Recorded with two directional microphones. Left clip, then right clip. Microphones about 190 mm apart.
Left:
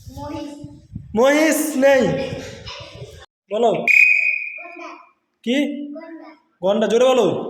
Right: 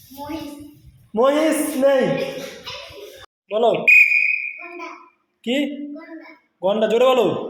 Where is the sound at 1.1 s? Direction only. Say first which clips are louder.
Left 2 dB; 30° left (ahead or behind).